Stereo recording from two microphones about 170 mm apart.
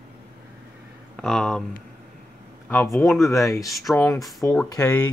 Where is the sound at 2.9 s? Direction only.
Centre (ahead or behind).